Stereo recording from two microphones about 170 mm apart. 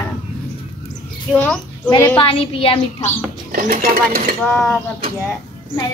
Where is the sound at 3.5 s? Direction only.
55° right (ahead or behind).